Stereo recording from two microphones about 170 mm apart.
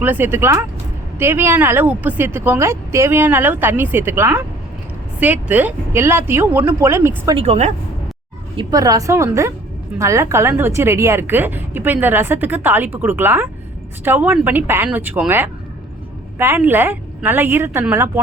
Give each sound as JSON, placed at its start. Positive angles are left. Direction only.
{"t": 0.0, "sound": "a woman's voice", "side_deg": -10}
{"t": 7.3, "sound": "speech", "side_deg": -35}
{"t": 8.5, "sound": "a woman's voice", "side_deg": -20}